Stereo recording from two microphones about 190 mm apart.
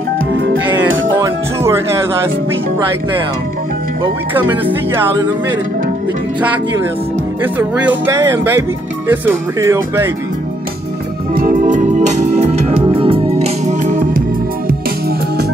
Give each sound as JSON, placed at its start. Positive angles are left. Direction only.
{"t": 0.3, "sound": "music", "side_deg": -90}
{"t": 1.2, "sound": "music", "side_deg": -15}
{"t": 8.0, "sound": "speech", "side_deg": -15}
{"t": 11.3, "sound": "organ", "side_deg": -45}